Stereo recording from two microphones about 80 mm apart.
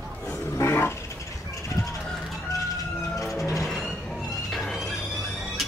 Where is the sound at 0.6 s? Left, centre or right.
Left.